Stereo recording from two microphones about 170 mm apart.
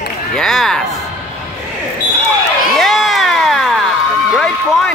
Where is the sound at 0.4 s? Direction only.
Centre (ahead or behind).